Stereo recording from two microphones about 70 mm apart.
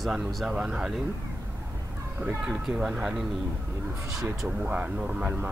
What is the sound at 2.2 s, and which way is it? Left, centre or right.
Speech, centre.